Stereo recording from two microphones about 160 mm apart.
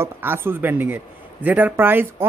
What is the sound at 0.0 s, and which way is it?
A man's voice, 15° right (ahead or behind).